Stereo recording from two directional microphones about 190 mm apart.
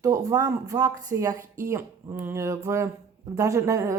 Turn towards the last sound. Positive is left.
turn(degrees=-15)  # may be behind; listen again after turning